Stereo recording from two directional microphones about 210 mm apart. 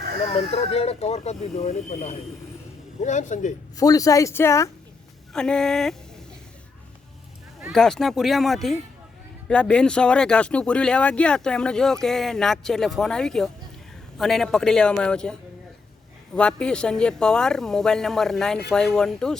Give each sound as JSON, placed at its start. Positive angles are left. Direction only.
{"t": 0.2, "sound": "speech", "side_deg": 30}
{"t": 3.0, "sound": "speech", "side_deg": 35}
{"t": 3.8, "sound": "speech", "side_deg": 15}
{"t": 5.3, "sound": "speech", "side_deg": 5}
{"t": 7.6, "sound": "speech", "side_deg": 0}